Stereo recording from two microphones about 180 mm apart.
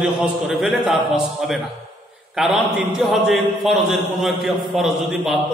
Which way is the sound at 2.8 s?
5° right (ahead or behind).